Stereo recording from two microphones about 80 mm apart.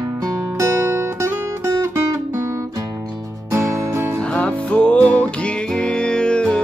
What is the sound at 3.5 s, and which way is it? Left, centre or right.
Music, right.